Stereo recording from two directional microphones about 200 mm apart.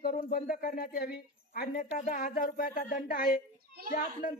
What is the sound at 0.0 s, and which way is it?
A woman's voice, 45° left (ahead or behind).